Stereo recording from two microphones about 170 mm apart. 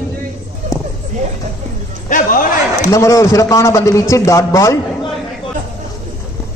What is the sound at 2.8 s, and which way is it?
A man's voice, 20° left (ahead or behind).